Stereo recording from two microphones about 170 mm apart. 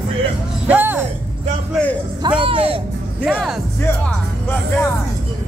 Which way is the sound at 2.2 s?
30° right (ahead or behind).